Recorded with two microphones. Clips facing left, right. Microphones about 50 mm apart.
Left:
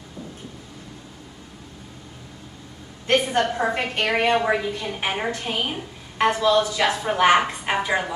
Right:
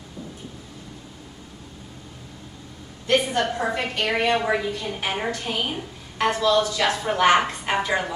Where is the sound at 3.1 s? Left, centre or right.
Left.